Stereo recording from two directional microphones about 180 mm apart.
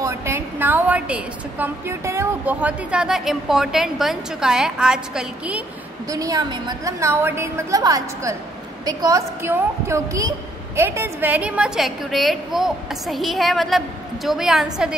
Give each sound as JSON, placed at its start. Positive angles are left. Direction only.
{"t": 0.0, "sound": "a woman's voice", "side_deg": -15}
{"t": 6.0, "sound": "a woman's voice", "side_deg": -20}